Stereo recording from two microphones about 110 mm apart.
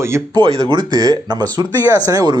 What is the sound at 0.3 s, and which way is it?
Speech, 45° right (ahead or behind).